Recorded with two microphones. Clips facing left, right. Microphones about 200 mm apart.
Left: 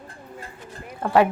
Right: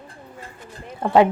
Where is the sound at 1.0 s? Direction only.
20° right (ahead or behind).